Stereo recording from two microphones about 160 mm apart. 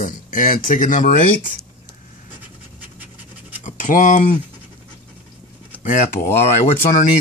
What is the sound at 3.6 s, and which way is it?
Scratch, 50° left (ahead or behind).